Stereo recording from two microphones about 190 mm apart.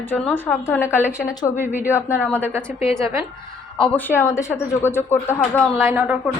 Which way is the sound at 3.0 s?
15° right (ahead or behind).